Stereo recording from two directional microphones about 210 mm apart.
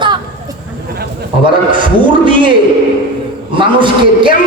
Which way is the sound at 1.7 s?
25° right (ahead or behind).